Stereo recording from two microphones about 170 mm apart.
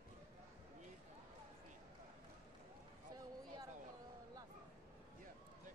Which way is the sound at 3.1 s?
20° right (ahead or behind).